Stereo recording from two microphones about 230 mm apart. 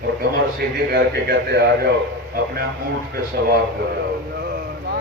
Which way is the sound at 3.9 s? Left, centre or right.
Right.